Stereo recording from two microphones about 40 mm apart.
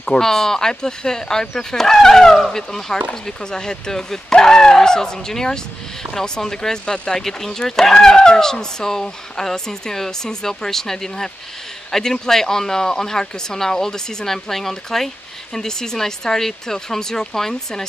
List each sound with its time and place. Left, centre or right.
0.0 s speech: left